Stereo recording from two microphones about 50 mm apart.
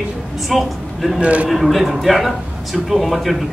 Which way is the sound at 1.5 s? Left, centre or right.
Centre.